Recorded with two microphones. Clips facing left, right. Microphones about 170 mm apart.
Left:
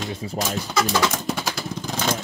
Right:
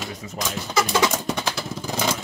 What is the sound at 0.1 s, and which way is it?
Speech, 30° left (ahead or behind).